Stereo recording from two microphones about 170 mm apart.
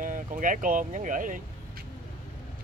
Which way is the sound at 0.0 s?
50° right (ahead or behind).